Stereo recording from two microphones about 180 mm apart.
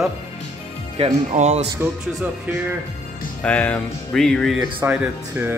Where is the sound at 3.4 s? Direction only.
10° left (ahead or behind).